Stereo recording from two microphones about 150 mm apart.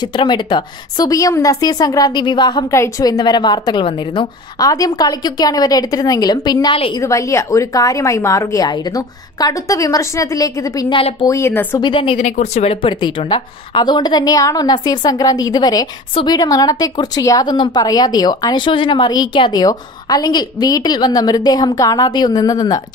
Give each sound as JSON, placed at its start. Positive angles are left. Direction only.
{"t": 0.0, "sound": "a woman's voice", "side_deg": 30}
{"t": 11.0, "sound": "a woman's voice", "side_deg": 40}
{"t": 11.2, "sound": "speech", "side_deg": 20}
{"t": 11.8, "sound": "a woman's voice", "side_deg": 35}
{"t": 12.2, "sound": "a woman's voice", "side_deg": 50}